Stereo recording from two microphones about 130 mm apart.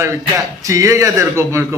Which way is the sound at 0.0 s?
25° right (ahead or behind).